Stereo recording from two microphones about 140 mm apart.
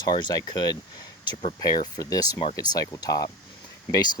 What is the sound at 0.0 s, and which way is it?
Speech, 30° left (ahead or behind).